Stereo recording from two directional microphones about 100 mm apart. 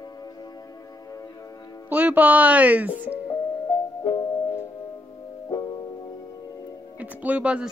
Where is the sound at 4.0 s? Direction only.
40° left (ahead or behind).